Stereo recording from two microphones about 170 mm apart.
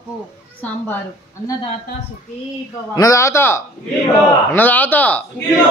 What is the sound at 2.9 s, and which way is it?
A man's voice, 20° left (ahead or behind).